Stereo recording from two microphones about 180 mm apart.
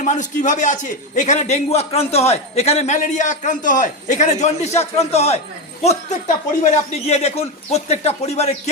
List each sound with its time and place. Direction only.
0.0 s a man's voice: 45° left (ahead or behind)